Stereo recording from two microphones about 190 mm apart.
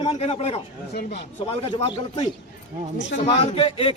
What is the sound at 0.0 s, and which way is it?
A man's voice, 30° left (ahead or behind).